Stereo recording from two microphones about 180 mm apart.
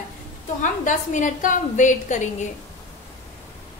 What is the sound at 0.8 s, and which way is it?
A woman's voice, 45° left (ahead or behind).